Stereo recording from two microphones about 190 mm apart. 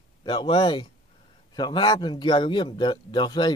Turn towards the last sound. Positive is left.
turn(degrees=25)  # may be behind; listen again after turning